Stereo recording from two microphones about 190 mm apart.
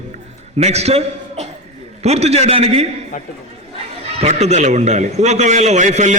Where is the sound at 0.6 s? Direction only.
35° right (ahead or behind).